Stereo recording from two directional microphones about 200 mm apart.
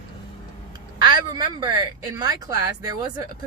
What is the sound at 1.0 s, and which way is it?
A woman's voice, 20° right (ahead or behind).